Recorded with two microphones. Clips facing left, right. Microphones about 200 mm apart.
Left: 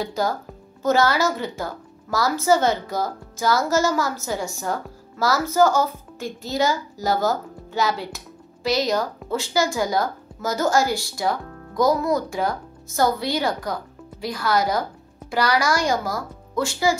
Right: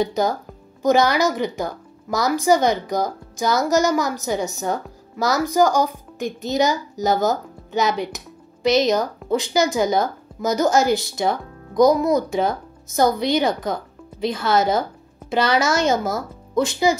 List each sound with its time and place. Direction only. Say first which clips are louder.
0.0 s a woman's voice: right 4 dB; 20° right (ahead or behind)